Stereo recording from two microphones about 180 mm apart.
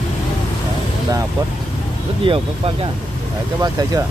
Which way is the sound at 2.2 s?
30° right (ahead or behind).